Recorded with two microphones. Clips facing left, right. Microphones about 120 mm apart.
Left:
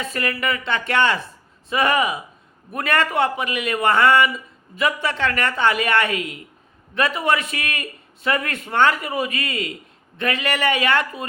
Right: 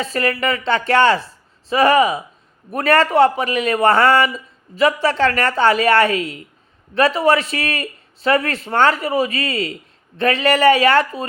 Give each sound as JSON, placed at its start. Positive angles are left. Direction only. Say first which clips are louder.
{"t": 0.0, "sound": "a man's voice", "louder": "right 5 dB", "side_deg": -30}